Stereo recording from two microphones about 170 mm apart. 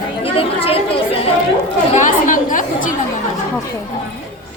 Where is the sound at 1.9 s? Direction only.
50° left (ahead or behind).